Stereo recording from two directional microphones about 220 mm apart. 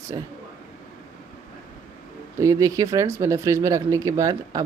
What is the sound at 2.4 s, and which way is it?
Speech, 15° right (ahead or behind).